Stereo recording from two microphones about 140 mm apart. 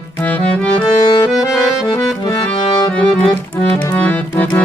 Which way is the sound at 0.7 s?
35° left (ahead or behind).